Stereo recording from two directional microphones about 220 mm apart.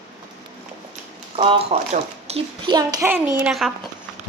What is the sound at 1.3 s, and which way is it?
Speech, 25° right (ahead or behind).